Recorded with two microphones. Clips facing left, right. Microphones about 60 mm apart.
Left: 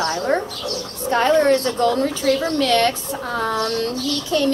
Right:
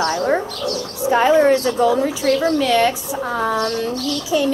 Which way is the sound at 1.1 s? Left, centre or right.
Centre.